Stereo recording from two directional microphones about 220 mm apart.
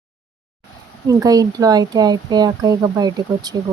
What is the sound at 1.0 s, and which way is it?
Speech, 15° right (ahead or behind).